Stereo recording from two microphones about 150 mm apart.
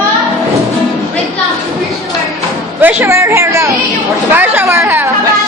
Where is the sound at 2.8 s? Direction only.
15° right (ahead or behind).